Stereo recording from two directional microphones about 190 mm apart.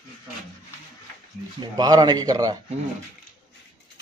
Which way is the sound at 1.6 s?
20° right (ahead or behind).